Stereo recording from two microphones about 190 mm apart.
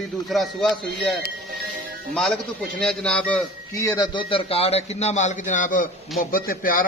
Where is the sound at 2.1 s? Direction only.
5° left (ahead or behind).